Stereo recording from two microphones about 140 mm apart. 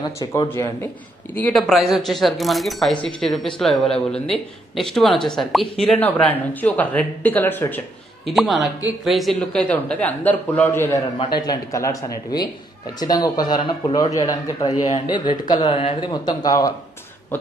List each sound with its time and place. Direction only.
0.0 s speech: 30° left (ahead or behind)
1.3 s a man's voice: 10° left (ahead or behind)
1.6 s speech: centre (ahead or behind); by 7.8 s 15° left (ahead or behind)
8.3 s a man's voice: centre (ahead or behind)
11.4 s a man's voice: 25° left (ahead or behind)
15.7 s speech: 45° left (ahead or behind)
16.0 s speech: 30° left (ahead or behind)